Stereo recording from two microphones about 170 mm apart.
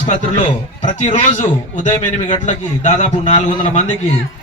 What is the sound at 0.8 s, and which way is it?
A man's voice, 45° left (ahead or behind).